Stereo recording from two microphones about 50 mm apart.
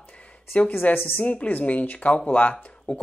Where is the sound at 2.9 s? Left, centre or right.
Centre.